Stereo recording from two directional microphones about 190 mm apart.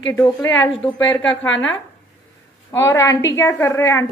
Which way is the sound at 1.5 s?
80° left.